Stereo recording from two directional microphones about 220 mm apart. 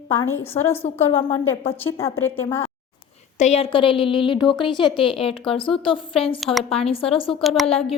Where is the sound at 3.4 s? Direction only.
30° left (ahead or behind).